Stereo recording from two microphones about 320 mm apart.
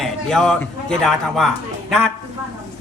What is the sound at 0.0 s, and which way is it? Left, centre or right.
A man's voice, centre.